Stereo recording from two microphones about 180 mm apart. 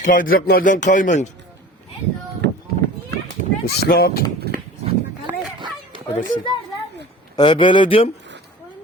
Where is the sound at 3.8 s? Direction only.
60° left (ahead or behind).